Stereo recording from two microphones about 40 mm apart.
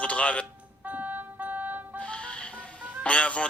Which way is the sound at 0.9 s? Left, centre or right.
Right.